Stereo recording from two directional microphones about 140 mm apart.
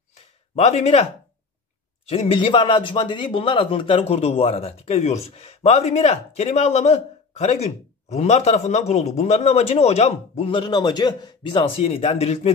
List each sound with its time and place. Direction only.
0.6 s speech: 50° left (ahead or behind)
2.0 s speech: 45° left (ahead or behind)